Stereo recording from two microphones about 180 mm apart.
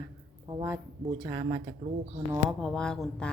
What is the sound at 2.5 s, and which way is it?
Speech, 5° left (ahead or behind).